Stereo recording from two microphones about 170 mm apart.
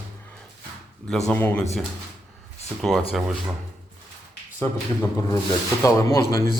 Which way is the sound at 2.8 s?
Centre (ahead or behind).